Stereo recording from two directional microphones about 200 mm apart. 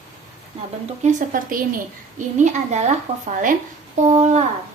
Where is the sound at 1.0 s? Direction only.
40° right (ahead or behind).